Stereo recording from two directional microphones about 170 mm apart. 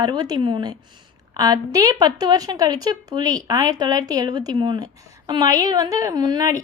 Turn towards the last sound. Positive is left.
turn(degrees=-20)  # may be behind; listen again after turning